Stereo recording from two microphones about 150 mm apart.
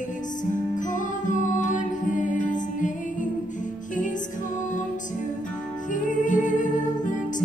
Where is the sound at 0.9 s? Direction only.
60° left (ahead or behind).